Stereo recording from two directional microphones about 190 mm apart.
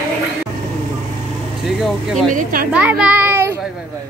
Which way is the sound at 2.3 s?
50° right (ahead or behind).